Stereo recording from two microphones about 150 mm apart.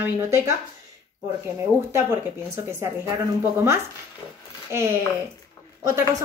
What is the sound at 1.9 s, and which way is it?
Speech, 15° right (ahead or behind).